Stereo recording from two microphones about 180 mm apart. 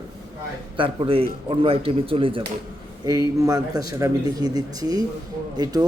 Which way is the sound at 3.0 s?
20° right (ahead or behind).